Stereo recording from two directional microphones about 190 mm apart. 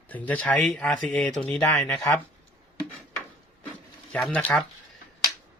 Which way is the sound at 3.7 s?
5° left (ahead or behind).